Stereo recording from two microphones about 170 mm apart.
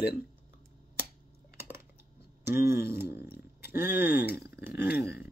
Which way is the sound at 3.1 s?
65° left (ahead or behind).